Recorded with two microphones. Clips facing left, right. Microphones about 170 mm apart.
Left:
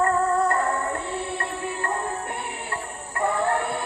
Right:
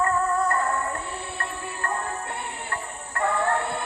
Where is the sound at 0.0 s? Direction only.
30° left (ahead or behind).